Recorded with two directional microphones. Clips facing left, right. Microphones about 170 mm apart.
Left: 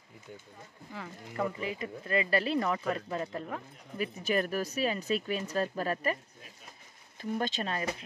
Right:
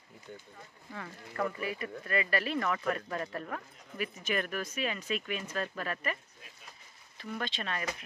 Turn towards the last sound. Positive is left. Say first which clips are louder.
# left 4 dB
turn(degrees=35)  # may be behind; listen again after turning